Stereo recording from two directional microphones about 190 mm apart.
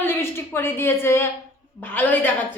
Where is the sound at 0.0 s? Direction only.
10° left (ahead or behind).